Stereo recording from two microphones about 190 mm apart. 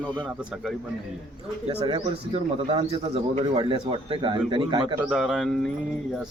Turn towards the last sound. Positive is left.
turn(degrees=0)  # may be behind; listen again after turning